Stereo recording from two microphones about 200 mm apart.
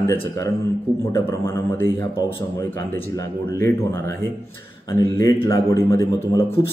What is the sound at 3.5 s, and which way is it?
A man's voice, 15° left (ahead or behind).